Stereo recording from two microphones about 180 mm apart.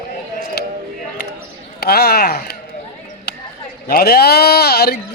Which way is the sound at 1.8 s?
60° left (ahead or behind).